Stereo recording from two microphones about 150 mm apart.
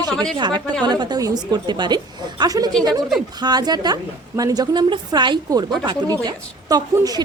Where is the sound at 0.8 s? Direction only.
30° right (ahead or behind).